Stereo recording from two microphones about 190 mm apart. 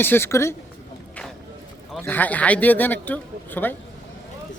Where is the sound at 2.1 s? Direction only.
10° left (ahead or behind).